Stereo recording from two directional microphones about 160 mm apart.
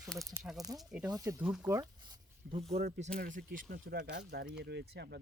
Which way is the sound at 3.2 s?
60° right (ahead or behind).